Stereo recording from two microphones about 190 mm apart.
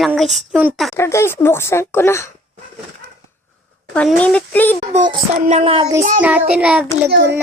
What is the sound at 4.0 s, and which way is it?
Speech, 5° left (ahead or behind).